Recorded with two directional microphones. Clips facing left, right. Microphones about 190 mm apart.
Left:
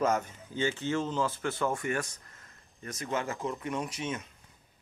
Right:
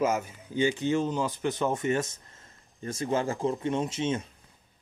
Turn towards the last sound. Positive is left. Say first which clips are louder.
# right 6 dB
turn(degrees=-25)  # may be behind; listen again after turning